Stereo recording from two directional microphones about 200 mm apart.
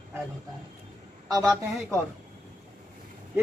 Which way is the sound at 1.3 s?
15° right (ahead or behind).